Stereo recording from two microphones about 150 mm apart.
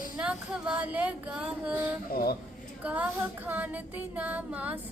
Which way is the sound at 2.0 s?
85° left.